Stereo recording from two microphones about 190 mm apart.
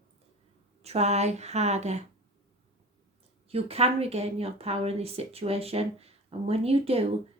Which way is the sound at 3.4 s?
30° right (ahead or behind).